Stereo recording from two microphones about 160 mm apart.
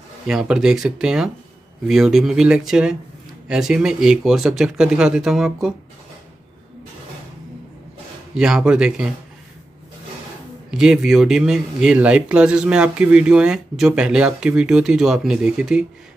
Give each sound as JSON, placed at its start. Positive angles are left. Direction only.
{"t": 0.3, "sound": "speech", "side_deg": -5}
{"t": 8.4, "sound": "speech", "side_deg": -5}
{"t": 10.7, "sound": "speech", "side_deg": -5}